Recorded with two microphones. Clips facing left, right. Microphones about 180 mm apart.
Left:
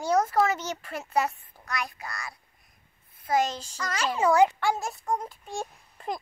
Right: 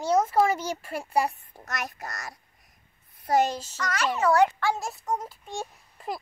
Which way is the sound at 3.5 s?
5° right (ahead or behind).